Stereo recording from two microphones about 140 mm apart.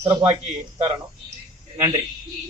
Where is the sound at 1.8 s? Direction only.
25° right (ahead or behind).